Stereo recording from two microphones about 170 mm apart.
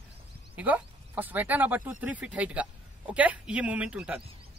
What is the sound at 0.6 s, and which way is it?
Speech, 10° right (ahead or behind).